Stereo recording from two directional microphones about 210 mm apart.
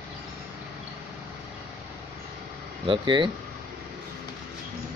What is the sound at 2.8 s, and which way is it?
Speech, 20° right (ahead or behind).